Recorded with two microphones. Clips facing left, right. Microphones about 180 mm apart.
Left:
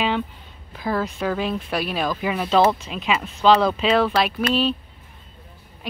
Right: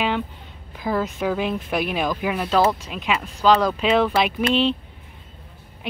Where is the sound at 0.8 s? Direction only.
Centre (ahead or behind).